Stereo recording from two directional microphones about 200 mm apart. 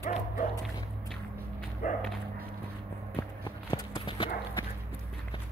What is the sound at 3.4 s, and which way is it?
Clip-clop, 20° left (ahead or behind).